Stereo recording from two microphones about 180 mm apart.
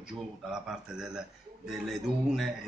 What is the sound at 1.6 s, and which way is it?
Speech, centre (ahead or behind).